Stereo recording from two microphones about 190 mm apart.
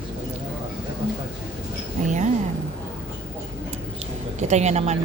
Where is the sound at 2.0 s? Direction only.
40° right (ahead or behind).